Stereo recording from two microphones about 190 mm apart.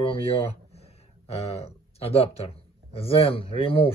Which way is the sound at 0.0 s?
30° left (ahead or behind).